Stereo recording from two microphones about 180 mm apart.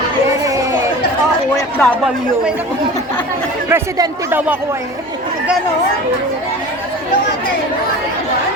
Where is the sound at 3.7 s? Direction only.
10° right (ahead or behind).